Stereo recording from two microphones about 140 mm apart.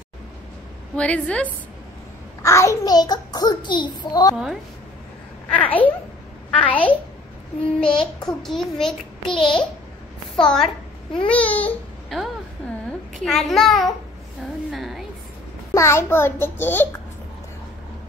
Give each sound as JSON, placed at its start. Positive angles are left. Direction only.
{"t": 0.9, "sound": "a child's voice", "side_deg": 10}
{"t": 2.4, "sound": "a child's voice", "side_deg": 20}
{"t": 5.5, "sound": "a child's voice", "side_deg": 10}
{"t": 7.8, "sound": "child singing", "side_deg": 5}
{"t": 11.2, "sound": "speech", "side_deg": 10}
{"t": 13.2, "sound": "child singing", "side_deg": 0}
{"t": 14.7, "sound": "a sound", "side_deg": 0}
{"t": 15.7, "sound": "a child's voice", "side_deg": 20}